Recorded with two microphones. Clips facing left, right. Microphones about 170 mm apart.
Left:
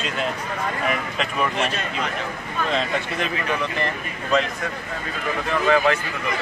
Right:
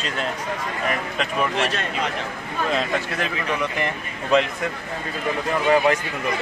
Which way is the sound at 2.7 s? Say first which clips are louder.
Even; 5° right (ahead or behind).